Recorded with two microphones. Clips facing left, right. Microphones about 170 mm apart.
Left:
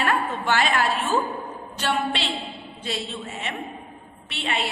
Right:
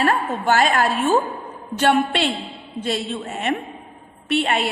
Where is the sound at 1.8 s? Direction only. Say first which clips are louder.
Right 7 dB; 55° right (ahead or behind).